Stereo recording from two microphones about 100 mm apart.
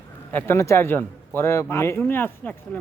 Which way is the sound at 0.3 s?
25° left (ahead or behind).